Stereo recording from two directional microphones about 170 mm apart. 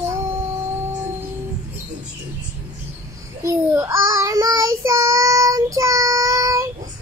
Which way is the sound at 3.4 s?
20° right (ahead or behind).